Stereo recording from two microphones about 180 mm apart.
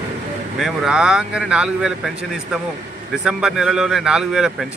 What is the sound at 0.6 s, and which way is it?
Speech, 5° right (ahead or behind).